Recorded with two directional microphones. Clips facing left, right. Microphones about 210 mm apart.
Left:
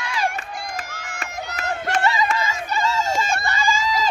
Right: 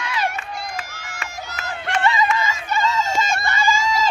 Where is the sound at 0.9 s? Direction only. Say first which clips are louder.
Left 2 dB; 55° left (ahead or behind).